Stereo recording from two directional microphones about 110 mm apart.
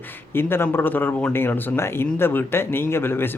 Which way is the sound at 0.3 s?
20° left (ahead or behind).